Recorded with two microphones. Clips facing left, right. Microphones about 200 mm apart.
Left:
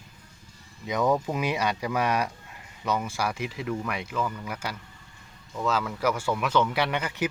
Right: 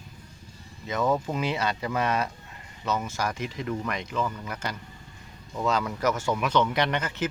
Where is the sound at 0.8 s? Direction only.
15° left (ahead or behind).